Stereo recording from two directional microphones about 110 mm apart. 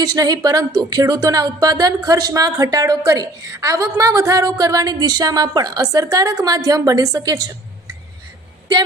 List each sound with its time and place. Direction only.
0.0 s speech: 35° right (ahead or behind)